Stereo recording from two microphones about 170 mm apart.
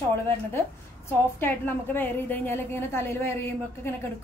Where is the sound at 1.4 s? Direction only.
10° left (ahead or behind).